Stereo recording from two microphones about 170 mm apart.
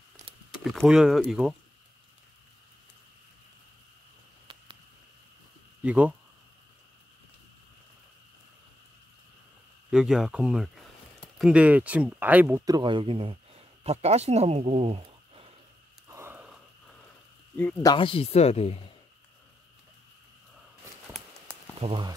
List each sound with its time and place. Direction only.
0.2 s keys jangling: 45° right (ahead or behind)
0.7 s speech: centre (ahead or behind)
5.8 s speech: 10° right (ahead or behind)
9.8 s speech: 5° right (ahead or behind); by 15.5 s 35° right (ahead or behind)
16.1 s snort: 15° right (ahead or behind)
17.8 s speech: 30° left (ahead or behind)
21.8 s speech: 30° right (ahead or behind)